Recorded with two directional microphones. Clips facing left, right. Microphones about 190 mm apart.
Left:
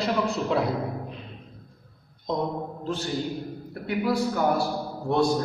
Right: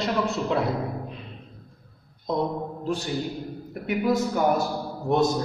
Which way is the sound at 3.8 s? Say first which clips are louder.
Right 1 dB; 20° right (ahead or behind).